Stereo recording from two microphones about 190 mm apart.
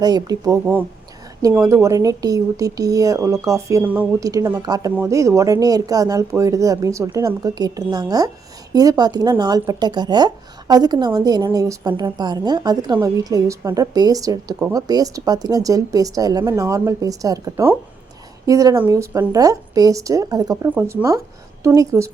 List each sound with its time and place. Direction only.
0.0 s speech: 20° right (ahead or behind)
1.6 s speech: 15° right (ahead or behind)